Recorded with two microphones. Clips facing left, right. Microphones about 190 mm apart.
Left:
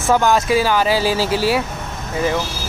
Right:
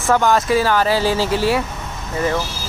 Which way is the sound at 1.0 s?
25° right (ahead or behind).